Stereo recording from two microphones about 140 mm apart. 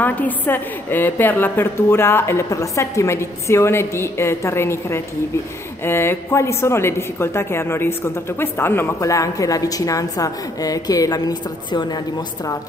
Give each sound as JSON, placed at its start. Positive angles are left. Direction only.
{"t": 0.0, "sound": "a woman's voice", "side_deg": 15}